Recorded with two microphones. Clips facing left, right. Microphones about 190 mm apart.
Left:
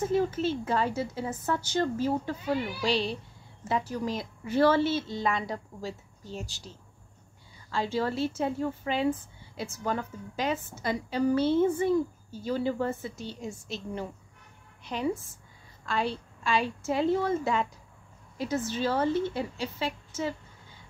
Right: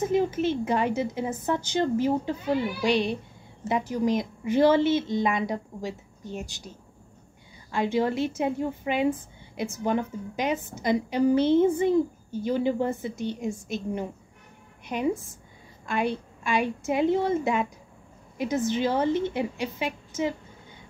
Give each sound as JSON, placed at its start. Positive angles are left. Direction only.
{"t": 0.0, "sound": "a woman's voice", "side_deg": -15}
{"t": 7.7, "sound": "a woman's voice", "side_deg": -15}
{"t": 14.9, "sound": "a woman's voice", "side_deg": -15}